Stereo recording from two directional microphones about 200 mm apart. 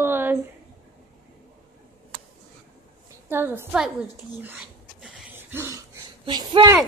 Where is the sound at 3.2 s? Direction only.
10° right (ahead or behind).